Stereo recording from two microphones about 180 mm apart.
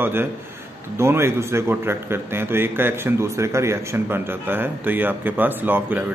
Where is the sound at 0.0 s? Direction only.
10° right (ahead or behind).